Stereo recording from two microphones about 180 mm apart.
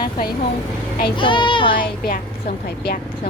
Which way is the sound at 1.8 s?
50° left (ahead or behind).